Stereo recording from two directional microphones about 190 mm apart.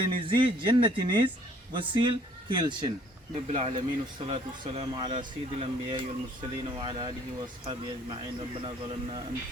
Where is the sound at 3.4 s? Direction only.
35° right (ahead or behind).